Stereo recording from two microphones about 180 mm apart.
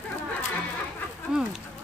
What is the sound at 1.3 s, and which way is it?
Speech, 5° right (ahead or behind).